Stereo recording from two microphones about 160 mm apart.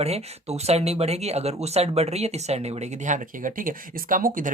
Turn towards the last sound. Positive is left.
turn(degrees=-60)  # may be behind; listen again after turning